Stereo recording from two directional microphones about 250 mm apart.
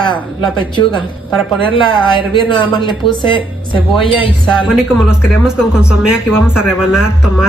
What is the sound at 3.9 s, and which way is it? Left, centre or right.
Speech, centre.